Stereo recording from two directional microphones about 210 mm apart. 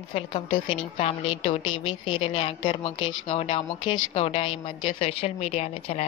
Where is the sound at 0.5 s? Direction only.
65° left (ahead or behind).